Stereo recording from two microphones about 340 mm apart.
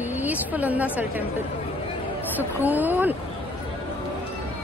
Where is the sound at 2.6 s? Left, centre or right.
Centre.